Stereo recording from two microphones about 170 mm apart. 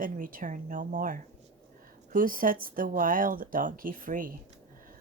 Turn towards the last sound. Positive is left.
turn(degrees=-55)  # may be behind; listen again after turning